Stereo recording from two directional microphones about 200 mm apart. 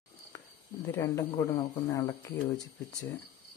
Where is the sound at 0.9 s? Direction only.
15° left (ahead or behind).